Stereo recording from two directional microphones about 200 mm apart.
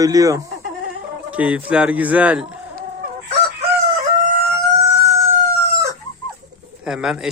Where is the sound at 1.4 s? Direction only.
5° right (ahead or behind).